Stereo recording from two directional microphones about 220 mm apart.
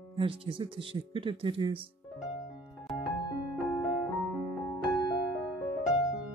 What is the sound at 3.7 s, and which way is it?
Music, centre (ahead or behind).